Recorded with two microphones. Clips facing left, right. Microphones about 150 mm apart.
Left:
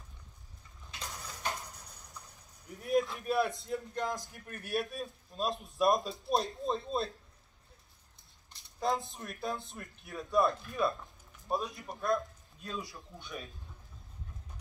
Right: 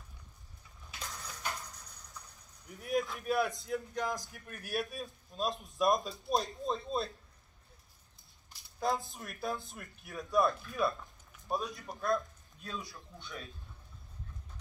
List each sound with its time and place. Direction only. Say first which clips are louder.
1.0 s dishes: left 2 dB; 20° left (ahead or behind)
2.8 s a man's voice: left 3 dB; centre (ahead or behind)
8.7 s a man's voice: left 1 dB; centre (ahead or behind)
12.8 s speech: left 2 dB; 20° left (ahead or behind)